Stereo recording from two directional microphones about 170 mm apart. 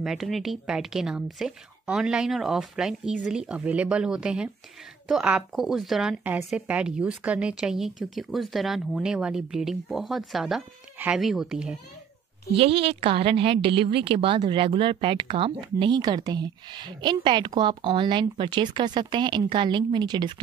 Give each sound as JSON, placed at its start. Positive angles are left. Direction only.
{"t": 0.0, "sound": "speech", "side_deg": 0}
{"t": 12.5, "sound": "a woman's voice", "side_deg": -35}